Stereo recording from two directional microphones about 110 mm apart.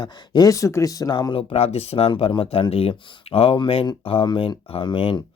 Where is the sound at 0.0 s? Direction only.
40° left (ahead or behind).